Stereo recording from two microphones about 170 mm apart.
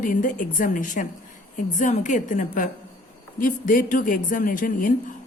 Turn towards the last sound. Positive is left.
turn(degrees=55)  # may be behind; listen again after turning